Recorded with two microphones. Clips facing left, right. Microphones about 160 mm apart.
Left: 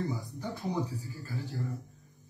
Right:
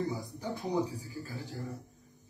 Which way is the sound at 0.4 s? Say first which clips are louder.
Right 2 dB; 15° right (ahead or behind).